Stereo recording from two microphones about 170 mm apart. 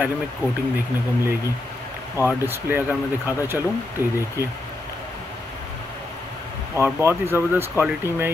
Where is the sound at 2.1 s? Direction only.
15° right (ahead or behind).